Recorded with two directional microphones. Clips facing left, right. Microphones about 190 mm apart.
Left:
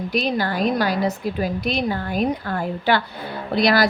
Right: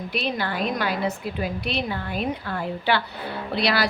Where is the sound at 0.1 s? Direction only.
40° left (ahead or behind).